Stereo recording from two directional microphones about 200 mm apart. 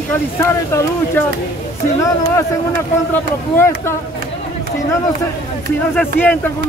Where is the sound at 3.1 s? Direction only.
10° left (ahead or behind).